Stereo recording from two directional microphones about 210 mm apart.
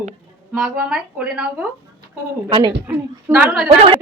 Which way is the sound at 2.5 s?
20° right (ahead or behind).